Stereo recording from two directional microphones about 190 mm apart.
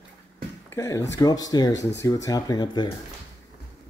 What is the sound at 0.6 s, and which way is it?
Speech, 15° left (ahead or behind).